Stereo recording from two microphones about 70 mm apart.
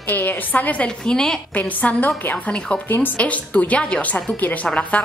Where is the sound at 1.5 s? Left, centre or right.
Left.